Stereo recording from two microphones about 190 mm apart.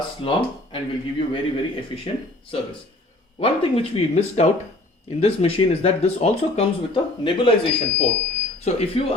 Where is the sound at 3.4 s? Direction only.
30° left (ahead or behind).